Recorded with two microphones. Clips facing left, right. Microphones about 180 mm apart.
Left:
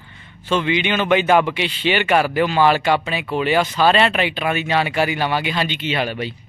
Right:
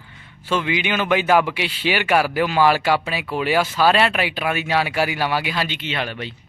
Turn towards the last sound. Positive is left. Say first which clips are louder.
# left 4 dB
turn(degrees=5)  # may be behind; listen again after turning